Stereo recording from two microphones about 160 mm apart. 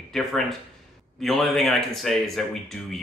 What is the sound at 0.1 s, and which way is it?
Speech, centre (ahead or behind).